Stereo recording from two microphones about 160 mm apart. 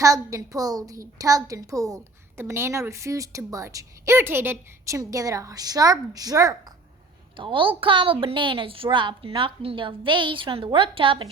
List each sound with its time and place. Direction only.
0.0 s a woman's voice: 20° right (ahead or behind)
7.3 s a woman's voice: 30° right (ahead or behind)